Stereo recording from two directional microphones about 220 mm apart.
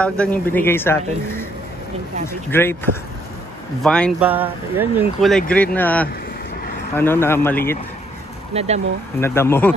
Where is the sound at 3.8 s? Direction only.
5° left (ahead or behind).